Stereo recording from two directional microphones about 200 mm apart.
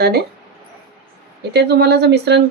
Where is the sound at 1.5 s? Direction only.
55° right (ahead or behind).